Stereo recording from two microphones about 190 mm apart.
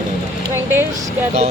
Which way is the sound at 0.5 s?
10° right (ahead or behind).